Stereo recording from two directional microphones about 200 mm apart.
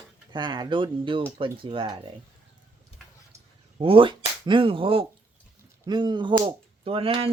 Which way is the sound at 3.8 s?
25° right (ahead or behind).